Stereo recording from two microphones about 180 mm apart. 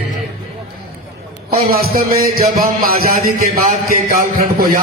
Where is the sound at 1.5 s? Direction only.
55° right (ahead or behind).